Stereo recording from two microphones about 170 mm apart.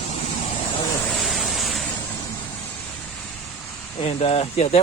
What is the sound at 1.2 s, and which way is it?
Waves, centre (ahead or behind).